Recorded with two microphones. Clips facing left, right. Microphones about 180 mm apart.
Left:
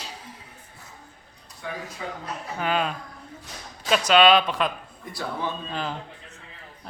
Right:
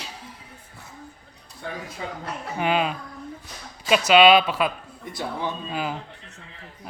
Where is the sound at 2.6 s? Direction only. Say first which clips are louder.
Right 3 dB; 10° right (ahead or behind).